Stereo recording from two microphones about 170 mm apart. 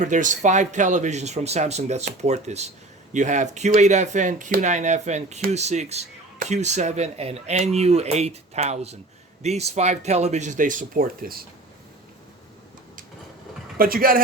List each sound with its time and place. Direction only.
0.0 s speech: 45° right (ahead or behind)
13.7 s speech: 60° right (ahead or behind)